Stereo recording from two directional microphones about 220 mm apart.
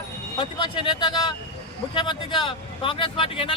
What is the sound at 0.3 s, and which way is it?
Speech, 20° left (ahead or behind).